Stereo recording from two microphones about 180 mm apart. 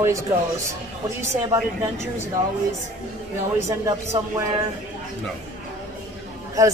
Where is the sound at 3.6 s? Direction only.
15° right (ahead or behind).